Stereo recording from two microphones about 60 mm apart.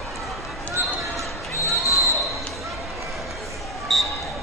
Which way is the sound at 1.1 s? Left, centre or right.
Right.